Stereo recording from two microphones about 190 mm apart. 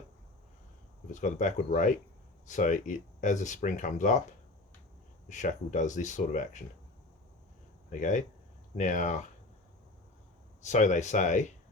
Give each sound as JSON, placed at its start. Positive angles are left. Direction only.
{"t": 1.1, "sound": "speech", "side_deg": 40}
{"t": 5.3, "sound": "speech", "side_deg": 40}
{"t": 7.9, "sound": "speech", "side_deg": 40}
{"t": 10.6, "sound": "speech", "side_deg": 40}